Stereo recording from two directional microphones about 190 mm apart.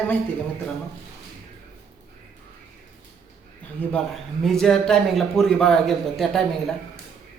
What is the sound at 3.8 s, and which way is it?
Speech, 5° left (ahead or behind).